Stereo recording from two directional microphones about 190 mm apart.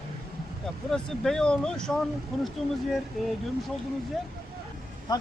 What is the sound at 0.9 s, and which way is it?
Speech, 5° left (ahead or behind).